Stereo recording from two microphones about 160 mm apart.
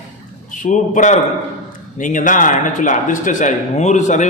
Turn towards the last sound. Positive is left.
turn(degrees=50)  # may be behind; listen again after turning